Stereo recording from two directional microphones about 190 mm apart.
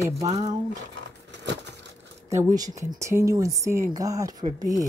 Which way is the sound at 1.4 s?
65° right (ahead or behind).